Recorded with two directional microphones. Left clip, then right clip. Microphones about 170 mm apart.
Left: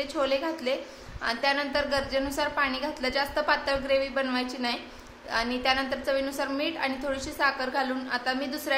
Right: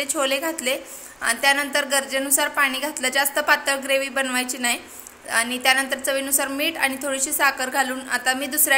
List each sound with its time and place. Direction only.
0.0 s a woman's voice: 20° right (ahead or behind)